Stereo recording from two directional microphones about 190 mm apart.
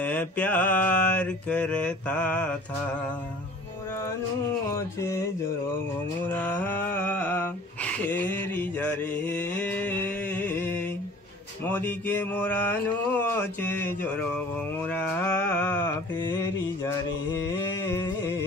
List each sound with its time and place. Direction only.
0.0 s mantra: 10° left (ahead or behind)
4.7 s mantra: 15° left (ahead or behind)
6.3 s a sound: 10° left (ahead or behind)
11.6 s mantra: 10° left (ahead or behind)
16.2 s mantra: 20° left (ahead or behind)
17.3 s a sound: 15° left (ahead or behind)